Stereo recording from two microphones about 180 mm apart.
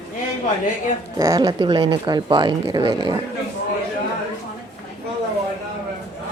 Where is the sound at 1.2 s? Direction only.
20° right (ahead or behind).